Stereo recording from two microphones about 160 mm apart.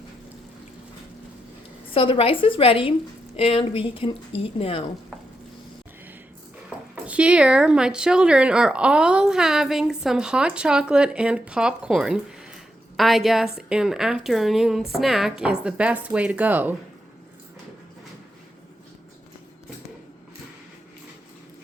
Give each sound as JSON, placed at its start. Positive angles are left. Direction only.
{"t": 1.9, "sound": "a woman's voice", "side_deg": 35}
{"t": 7.0, "sound": "speech", "side_deg": -10}